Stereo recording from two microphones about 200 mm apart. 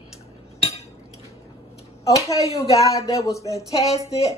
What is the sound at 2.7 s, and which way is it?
Speech, 15° left (ahead or behind).